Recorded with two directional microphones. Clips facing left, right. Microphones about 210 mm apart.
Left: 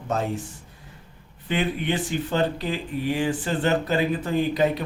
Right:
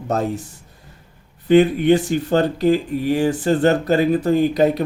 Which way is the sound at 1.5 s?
40° right (ahead or behind).